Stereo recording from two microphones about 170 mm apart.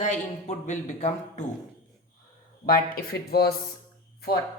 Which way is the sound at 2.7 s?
60° left (ahead or behind).